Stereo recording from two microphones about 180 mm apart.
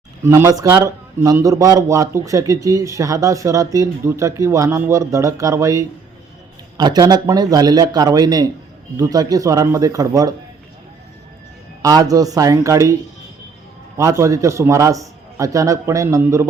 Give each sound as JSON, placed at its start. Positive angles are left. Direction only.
{"t": 0.2, "sound": "a man's voice", "side_deg": -15}
{"t": 11.8, "sound": "a man's voice", "side_deg": -20}